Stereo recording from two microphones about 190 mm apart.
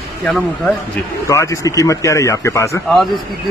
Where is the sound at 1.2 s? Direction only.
15° left (ahead or behind).